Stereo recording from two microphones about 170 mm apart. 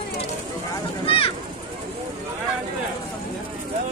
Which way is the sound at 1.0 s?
35° left (ahead or behind).